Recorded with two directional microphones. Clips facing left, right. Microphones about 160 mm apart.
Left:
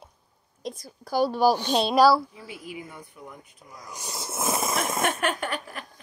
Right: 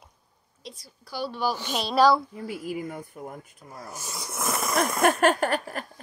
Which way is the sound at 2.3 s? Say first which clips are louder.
Right 7 dB; 45° right (ahead or behind).